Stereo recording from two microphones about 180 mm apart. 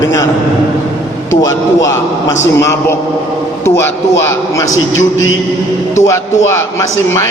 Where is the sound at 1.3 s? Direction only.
15° left (ahead or behind).